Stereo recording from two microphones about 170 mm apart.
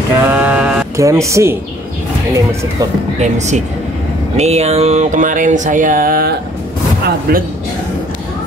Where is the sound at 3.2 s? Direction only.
45° right (ahead or behind); by 6.3 s 60° right (ahead or behind).